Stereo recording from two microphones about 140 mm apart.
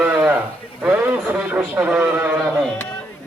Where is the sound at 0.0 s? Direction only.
10° right (ahead or behind).